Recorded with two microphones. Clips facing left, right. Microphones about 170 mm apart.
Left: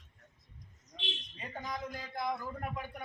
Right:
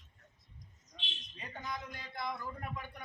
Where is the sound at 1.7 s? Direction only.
45° left (ahead or behind).